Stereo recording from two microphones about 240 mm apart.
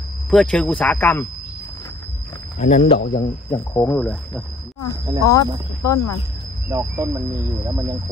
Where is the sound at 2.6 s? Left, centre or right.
Left.